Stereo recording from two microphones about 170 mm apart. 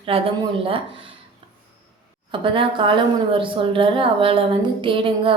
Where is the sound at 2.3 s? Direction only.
30° right (ahead or behind).